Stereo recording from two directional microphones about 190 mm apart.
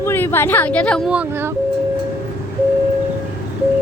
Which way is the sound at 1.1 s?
5° right (ahead or behind).